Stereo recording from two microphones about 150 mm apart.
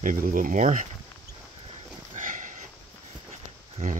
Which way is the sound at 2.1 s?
60° right (ahead or behind).